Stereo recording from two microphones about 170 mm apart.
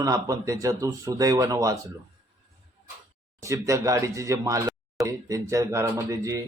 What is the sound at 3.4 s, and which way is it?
Speech, 20° right (ahead or behind).